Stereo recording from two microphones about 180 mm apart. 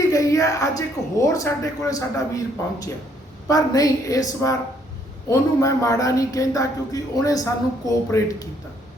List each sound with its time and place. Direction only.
0.0 s speech: 20° left (ahead or behind)